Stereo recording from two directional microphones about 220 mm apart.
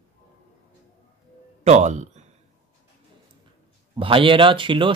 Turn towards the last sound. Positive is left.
turn(degrees=-20)  # may be behind; listen again after turning